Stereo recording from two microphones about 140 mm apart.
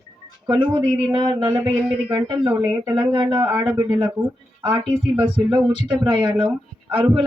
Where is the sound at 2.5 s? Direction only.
20° right (ahead or behind).